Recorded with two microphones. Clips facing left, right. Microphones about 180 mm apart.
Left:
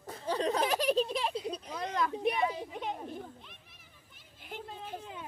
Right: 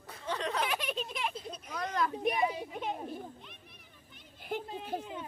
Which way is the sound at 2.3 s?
15° right (ahead or behind).